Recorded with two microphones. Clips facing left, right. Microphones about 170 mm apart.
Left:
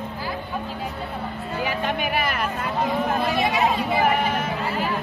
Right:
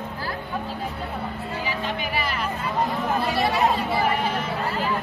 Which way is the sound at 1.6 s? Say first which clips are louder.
Left 5 dB; 55° left (ahead or behind).